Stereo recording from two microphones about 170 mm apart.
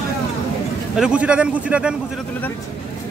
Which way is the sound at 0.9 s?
5° right (ahead or behind).